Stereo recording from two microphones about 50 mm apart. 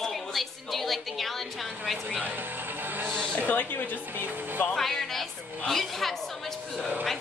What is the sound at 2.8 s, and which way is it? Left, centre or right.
Music, right.